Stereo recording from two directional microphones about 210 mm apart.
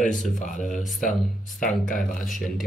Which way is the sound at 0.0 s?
35° left (ahead or behind).